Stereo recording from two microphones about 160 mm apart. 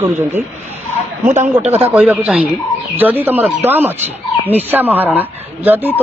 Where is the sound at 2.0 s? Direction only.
5° right (ahead or behind).